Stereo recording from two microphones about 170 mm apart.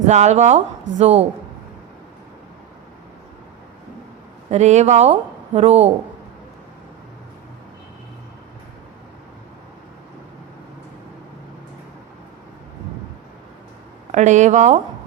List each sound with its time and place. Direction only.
0.0 s speech: 40° right (ahead or behind)
4.4 s speech: 40° right (ahead or behind)
14.1 s speech: 45° right (ahead or behind)